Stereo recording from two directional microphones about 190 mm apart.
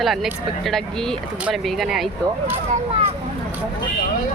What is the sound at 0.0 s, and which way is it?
Speech, centre (ahead or behind).